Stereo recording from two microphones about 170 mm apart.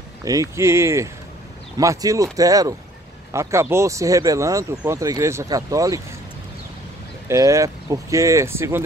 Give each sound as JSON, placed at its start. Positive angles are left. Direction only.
{"t": 0.2, "sound": "speech", "side_deg": -20}
{"t": 7.2, "sound": "speech", "side_deg": -15}